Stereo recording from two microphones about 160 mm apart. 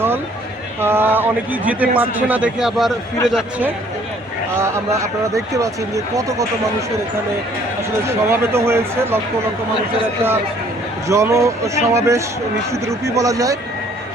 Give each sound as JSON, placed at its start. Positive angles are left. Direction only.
{"t": 0.8, "sound": "a man's voice", "side_deg": -15}
{"t": 4.5, "sound": "speech", "side_deg": -15}
{"t": 8.0, "sound": "speech", "side_deg": -15}
{"t": 11.1, "sound": "speech", "side_deg": -20}